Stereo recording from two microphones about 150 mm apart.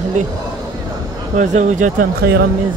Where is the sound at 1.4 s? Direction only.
50° right (ahead or behind).